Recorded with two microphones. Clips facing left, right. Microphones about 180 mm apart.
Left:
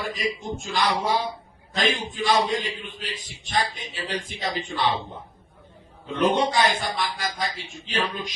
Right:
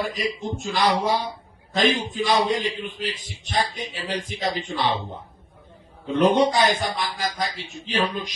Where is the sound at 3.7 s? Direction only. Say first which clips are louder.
Right 2 dB; 45° right (ahead or behind).